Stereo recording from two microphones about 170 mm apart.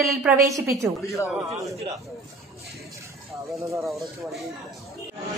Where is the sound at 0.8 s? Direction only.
10° right (ahead or behind).